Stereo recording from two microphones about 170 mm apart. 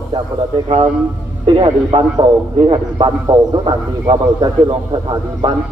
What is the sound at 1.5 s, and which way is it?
A man's voice, 30° right (ahead or behind).